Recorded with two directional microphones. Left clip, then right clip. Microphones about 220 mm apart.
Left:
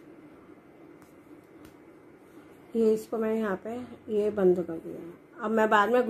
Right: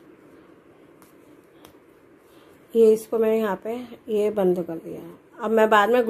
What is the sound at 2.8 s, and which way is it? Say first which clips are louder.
A woman's voice: right 9 dB; 30° right (ahead or behind).